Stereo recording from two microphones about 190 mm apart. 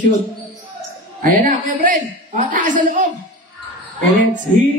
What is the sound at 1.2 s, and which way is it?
A man's voice, 45° right (ahead or behind).